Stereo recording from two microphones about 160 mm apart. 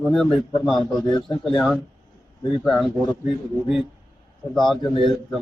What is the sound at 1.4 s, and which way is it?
Speech, centre (ahead or behind).